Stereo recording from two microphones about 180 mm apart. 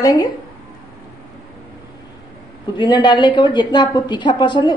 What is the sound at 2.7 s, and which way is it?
A woman's voice, 25° left (ahead or behind).